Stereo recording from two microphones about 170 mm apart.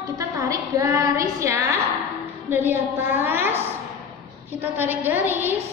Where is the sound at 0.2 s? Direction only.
20° right (ahead or behind).